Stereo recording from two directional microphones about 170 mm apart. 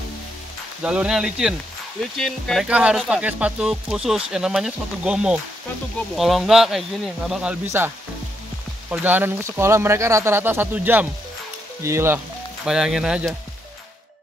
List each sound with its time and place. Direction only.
0.8 s speech: 5° right (ahead or behind)
8.9 s speech: 10° right (ahead or behind)
12.6 s speech: 5° right (ahead or behind)